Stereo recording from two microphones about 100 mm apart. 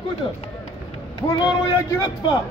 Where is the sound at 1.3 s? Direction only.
40° left (ahead or behind).